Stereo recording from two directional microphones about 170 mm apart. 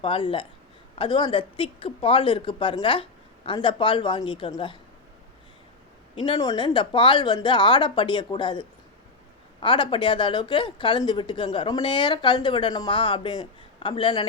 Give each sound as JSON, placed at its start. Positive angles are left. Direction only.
{"t": 0.0, "sound": "speech", "side_deg": 30}
{"t": 6.4, "sound": "speech", "side_deg": 25}